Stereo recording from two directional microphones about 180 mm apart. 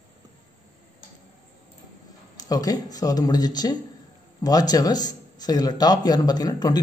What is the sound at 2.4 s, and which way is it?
Speech, 20° left (ahead or behind).